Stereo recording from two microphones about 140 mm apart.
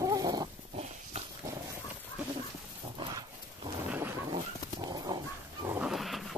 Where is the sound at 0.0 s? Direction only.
25° right (ahead or behind).